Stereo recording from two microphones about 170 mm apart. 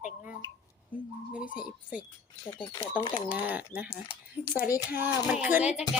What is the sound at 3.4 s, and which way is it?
Speech, 10° right (ahead or behind).